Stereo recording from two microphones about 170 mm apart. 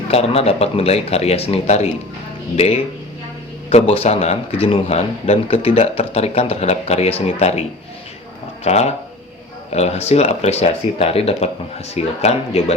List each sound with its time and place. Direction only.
0.1 s speech: 35° left (ahead or behind)
8.6 s speech: 40° left (ahead or behind)